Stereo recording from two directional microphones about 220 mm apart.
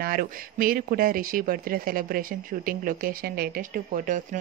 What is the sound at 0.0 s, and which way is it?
Speech, 40° right (ahead or behind).